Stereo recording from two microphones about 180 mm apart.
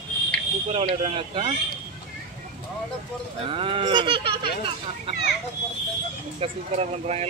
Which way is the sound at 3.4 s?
30° right (ahead or behind).